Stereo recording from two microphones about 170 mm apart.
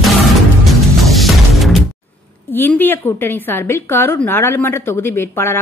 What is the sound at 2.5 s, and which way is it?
A woman's voice, 10° left (ahead or behind).